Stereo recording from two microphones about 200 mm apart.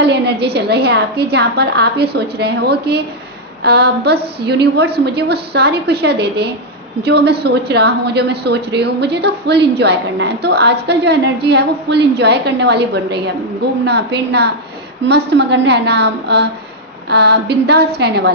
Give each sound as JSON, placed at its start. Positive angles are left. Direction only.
{"t": 0.0, "sound": "a woman's voice", "side_deg": -55}